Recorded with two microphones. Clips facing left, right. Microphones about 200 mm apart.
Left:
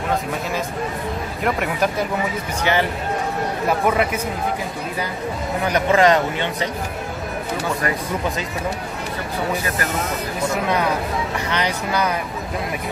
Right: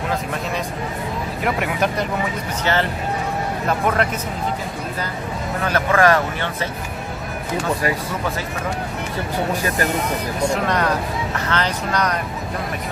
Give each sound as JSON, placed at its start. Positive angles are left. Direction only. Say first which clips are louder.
{"t": 1.4, "sound": "speech", "louder": "left 1 dB", "side_deg": 0}
{"t": 2.6, "sound": "speech", "louder": "left 1 dB", "side_deg": 15}
{"t": 3.9, "sound": "speech", "louder": "left 1 dB", "side_deg": 10}
{"t": 5.6, "sound": "speech", "louder": "left 1 dB", "side_deg": 15}
{"t": 10.5, "sound": "speech", "louder": "left 1 dB", "side_deg": 5}